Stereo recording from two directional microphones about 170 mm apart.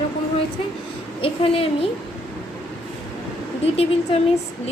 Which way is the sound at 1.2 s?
35° left (ahead or behind).